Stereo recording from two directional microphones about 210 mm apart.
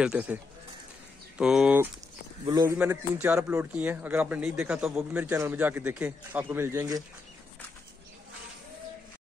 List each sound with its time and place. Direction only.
0.0 s speech: 5° right (ahead or behind)
1.4 s speech: 5° right (ahead or behind)
2.4 s speech: 20° right (ahead or behind)
2.8 s a man's voice: 10° right (ahead or behind)